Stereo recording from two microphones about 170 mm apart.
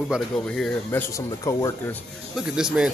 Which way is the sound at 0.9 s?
15° left (ahead or behind).